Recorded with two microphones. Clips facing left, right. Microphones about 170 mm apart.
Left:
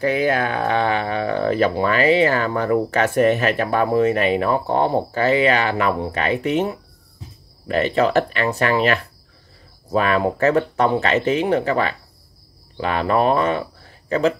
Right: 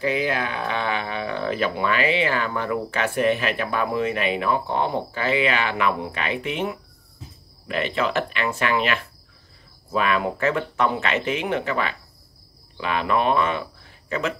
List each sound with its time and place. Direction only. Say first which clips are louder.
0.0 s speech: left 5 dB; 50° left (ahead or behind)